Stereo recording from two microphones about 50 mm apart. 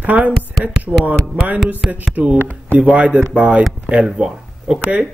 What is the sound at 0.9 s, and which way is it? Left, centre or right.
Speech, centre.